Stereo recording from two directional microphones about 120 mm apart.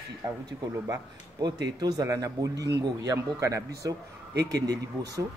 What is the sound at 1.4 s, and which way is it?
A man's voice, 35° right (ahead or behind).